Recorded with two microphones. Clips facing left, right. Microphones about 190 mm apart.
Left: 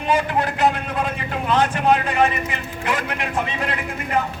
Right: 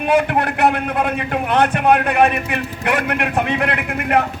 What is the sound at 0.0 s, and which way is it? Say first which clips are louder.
A man's voice: right 4 dB; 65° right (ahead or behind).